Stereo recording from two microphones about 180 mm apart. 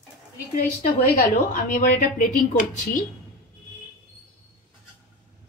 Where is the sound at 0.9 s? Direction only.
50° left (ahead or behind).